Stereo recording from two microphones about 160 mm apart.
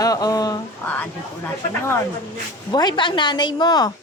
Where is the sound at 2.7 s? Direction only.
30° left (ahead or behind).